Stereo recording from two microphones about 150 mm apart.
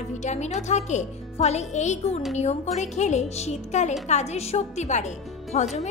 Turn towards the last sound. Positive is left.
turn(degrees=50)  # may be behind; listen again after turning